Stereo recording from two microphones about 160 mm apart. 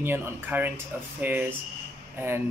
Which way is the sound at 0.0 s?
15° right (ahead or behind).